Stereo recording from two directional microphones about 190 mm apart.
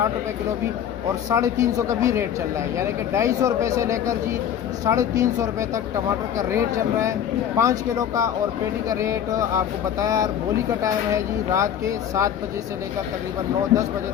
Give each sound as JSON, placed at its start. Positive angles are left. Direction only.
{"t": 1.3, "sound": "speech", "side_deg": -15}